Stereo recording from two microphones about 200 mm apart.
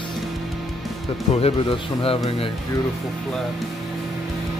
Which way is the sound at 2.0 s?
30° left (ahead or behind).